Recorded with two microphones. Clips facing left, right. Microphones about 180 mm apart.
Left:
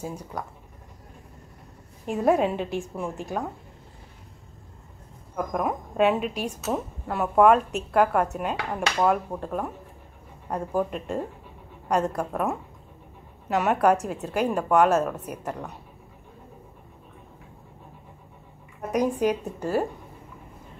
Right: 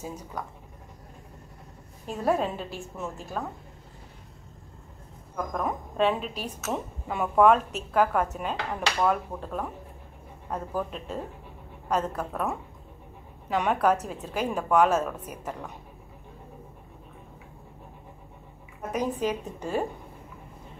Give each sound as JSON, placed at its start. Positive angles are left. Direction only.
{"t": 0.0, "sound": "a woman's voice", "side_deg": 10}
{"t": 2.0, "sound": "a woman's voice", "side_deg": 15}
{"t": 5.3, "sound": "a woman's voice", "side_deg": 10}
{"t": 12.2, "sound": "a woman's voice", "side_deg": 10}
{"t": 13.5, "sound": "a woman's voice", "side_deg": 5}
{"t": 18.9, "sound": "a woman's voice", "side_deg": 10}